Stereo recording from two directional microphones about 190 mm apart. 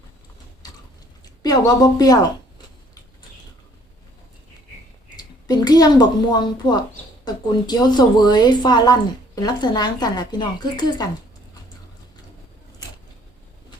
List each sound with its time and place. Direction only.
1.4 s speech: 20° left (ahead or behind)
5.1 s a woman's voice: 20° left (ahead or behind)